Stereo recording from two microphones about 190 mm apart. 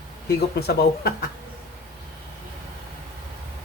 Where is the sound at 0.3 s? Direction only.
55° left (ahead or behind).